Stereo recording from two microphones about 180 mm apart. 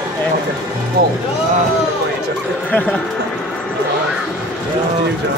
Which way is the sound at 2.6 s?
10° left (ahead or behind).